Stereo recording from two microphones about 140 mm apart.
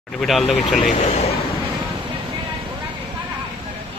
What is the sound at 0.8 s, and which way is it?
Speech, 55° left (ahead or behind).